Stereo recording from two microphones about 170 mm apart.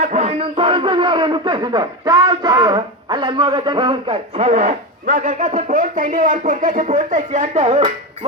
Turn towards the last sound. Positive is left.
turn(degrees=-40)  # may be behind; listen again after turning